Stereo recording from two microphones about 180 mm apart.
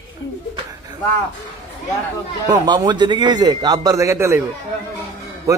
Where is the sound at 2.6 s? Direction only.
25° right (ahead or behind).